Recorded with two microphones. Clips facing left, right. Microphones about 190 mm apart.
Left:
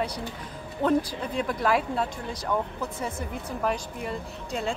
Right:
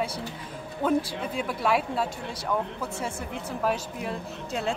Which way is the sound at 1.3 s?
5° right (ahead or behind).